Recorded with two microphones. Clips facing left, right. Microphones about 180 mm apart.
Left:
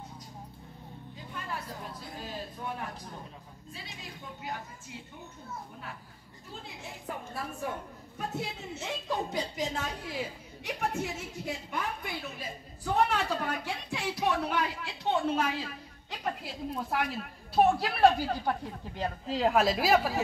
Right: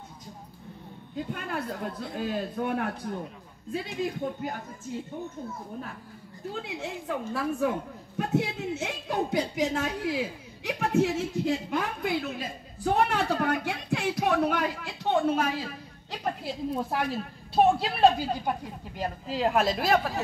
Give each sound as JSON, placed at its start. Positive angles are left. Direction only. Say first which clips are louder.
{"t": 1.1, "sound": "a woman's voice", "louder": "right 8 dB", "side_deg": -60}
{"t": 6.5, "sound": "a woman's voice", "louder": "right 9 dB", "side_deg": -75}
{"t": 16.4, "sound": "a woman's voice", "louder": "right 5 dB", "side_deg": -30}